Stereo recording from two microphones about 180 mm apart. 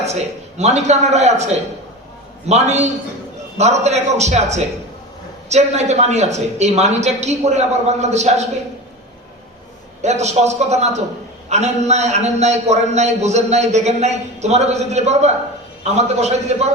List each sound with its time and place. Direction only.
0.0 s a man's voice: 35° right (ahead or behind)
10.0 s a man's voice: 40° right (ahead or behind)